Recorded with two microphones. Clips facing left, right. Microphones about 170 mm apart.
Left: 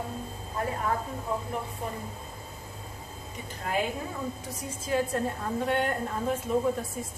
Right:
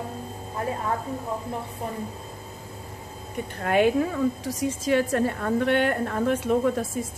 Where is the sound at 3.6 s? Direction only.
70° right (ahead or behind).